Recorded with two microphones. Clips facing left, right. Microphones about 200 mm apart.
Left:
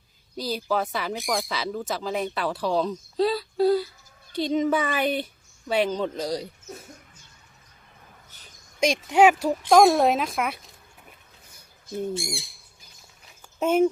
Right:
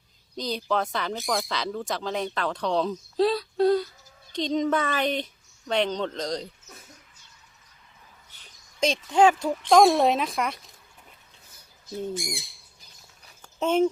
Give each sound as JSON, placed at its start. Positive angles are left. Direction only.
{"t": 0.3, "sound": "speech", "side_deg": 5}
{"t": 8.8, "sound": "speech", "side_deg": 10}
{"t": 11.9, "sound": "speech", "side_deg": 15}
{"t": 13.6, "sound": "speech", "side_deg": 10}